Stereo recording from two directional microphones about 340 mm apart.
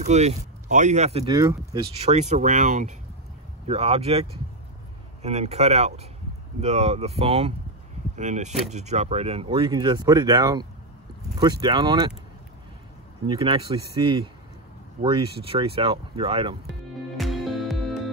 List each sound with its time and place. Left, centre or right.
0.0 s speech: centre
13.3 s speech: centre
17.2 s music: centre